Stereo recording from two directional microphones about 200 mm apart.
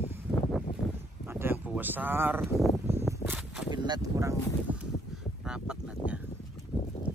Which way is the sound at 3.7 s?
20° right (ahead or behind).